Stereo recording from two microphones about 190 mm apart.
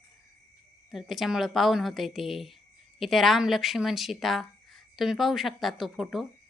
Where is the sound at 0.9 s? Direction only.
Centre (ahead or behind).